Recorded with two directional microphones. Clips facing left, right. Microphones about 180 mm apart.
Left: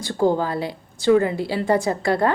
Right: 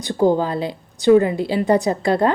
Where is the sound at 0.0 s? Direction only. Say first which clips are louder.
Right 3 dB; 20° right (ahead or behind).